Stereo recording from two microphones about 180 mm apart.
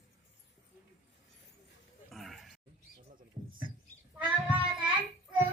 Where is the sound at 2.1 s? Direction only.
Centre (ahead or behind).